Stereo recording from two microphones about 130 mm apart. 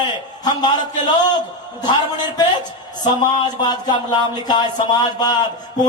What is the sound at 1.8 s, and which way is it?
A man's voice, 35° left (ahead or behind).